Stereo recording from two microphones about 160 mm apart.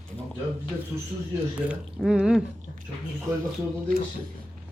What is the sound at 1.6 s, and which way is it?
Speech, 5° right (ahead or behind).